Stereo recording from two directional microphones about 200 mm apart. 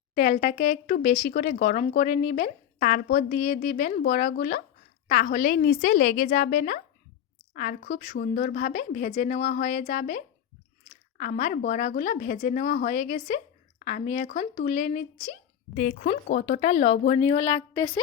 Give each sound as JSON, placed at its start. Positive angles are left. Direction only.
{"t": 0.1, "sound": "speech", "side_deg": 45}